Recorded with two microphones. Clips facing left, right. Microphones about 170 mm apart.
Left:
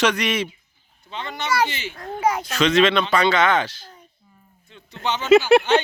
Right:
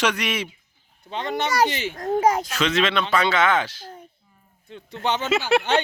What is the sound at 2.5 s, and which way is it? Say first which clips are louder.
Speech: left 5 dB; 5° right (ahead or behind).